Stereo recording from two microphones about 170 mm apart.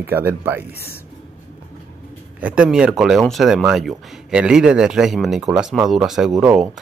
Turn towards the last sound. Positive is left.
turn(degrees=-5)  # may be behind; listen again after turning